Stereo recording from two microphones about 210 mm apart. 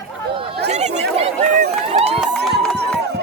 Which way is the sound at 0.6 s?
30° right (ahead or behind).